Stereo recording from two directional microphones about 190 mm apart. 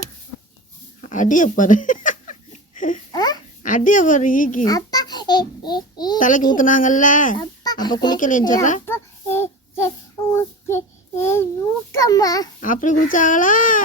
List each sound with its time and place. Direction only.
1.0 s giggle: 40° left (ahead or behind)
3.1 s a sound: 20° left (ahead or behind)
3.6 s speech: 40° left (ahead or behind)
4.6 s babbling: 20° left (ahead or behind)
6.1 s speech: 45° left (ahead or behind)
7.3 s speech: 20° left (ahead or behind)
8.1 s speech: 45° left (ahead or behind)
8.9 s a sound: 10° left (ahead or behind)
10.3 s child singing: 15° left (ahead or behind)
11.9 s a child's voice: 15° left (ahead or behind)
12.5 s speech: 45° left (ahead or behind)